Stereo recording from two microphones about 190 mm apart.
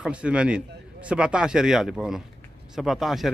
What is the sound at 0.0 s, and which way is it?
A man's voice, 5° right (ahead or behind).